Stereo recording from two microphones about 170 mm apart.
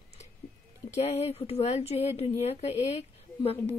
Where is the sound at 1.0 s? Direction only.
40° left (ahead or behind).